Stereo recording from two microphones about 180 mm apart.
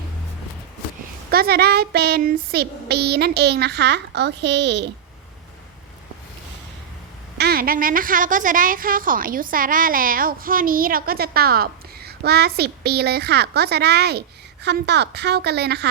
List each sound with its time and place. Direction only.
1.3 s a woman's voice: 60° right (ahead or behind); by 4.9 s 75° right (ahead or behind)
7.3 s a woman's voice: 60° right (ahead or behind)